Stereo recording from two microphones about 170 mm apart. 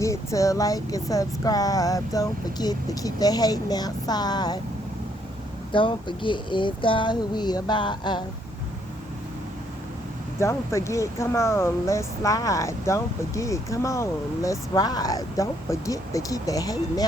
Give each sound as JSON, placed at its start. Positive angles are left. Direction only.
{"t": 0.0, "sound": "speech", "side_deg": 20}
{"t": 5.7, "sound": "speech", "side_deg": 30}
{"t": 10.4, "sound": "speech", "side_deg": 15}